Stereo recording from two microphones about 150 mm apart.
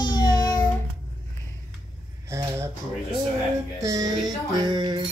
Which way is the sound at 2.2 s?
20° right (ahead or behind).